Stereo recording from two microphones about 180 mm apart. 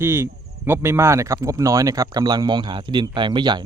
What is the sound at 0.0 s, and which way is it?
Speech, 10° right (ahead or behind).